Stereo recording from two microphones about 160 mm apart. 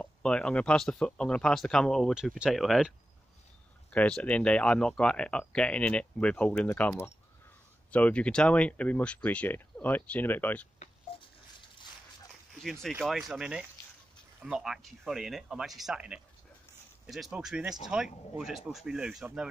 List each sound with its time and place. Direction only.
0.0 s speech: 5° left (ahead or behind)
3.9 s speech: 10° left (ahead or behind)
11.1 s a sound: 35° left (ahead or behind)
13.0 s speech: 5° right (ahead or behind)